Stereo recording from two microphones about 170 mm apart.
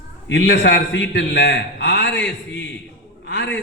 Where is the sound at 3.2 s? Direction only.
85° left.